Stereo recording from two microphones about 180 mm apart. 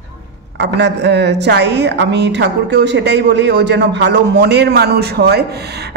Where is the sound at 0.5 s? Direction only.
75° right (ahead or behind).